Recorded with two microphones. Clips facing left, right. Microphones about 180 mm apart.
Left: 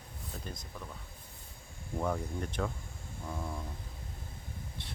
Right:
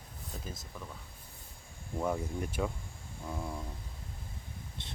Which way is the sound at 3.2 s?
5° right (ahead or behind).